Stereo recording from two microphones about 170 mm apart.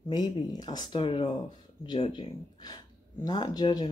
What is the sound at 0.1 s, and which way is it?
Speech, 25° left (ahead or behind).